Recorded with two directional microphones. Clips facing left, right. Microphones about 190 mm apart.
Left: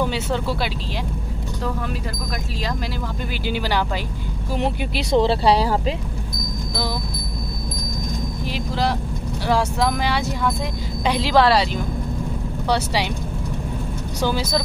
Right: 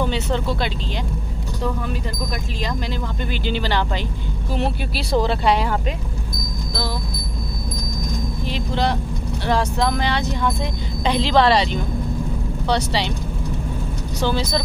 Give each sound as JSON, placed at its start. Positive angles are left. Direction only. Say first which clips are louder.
{"t": 0.0, "sound": "speech", "louder": "even", "side_deg": 5}
{"t": 3.4, "sound": "speech", "louder": "even", "side_deg": 10}
{"t": 8.5, "sound": "a woman's voice", "louder": "right 1 dB", "side_deg": 5}
{"t": 14.2, "sound": "speech", "louder": "even", "side_deg": 10}